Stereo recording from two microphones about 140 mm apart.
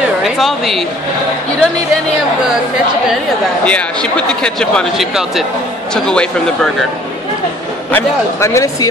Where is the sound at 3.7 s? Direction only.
10° left (ahead or behind).